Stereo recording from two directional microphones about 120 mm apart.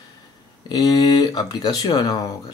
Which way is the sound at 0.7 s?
30° left (ahead or behind).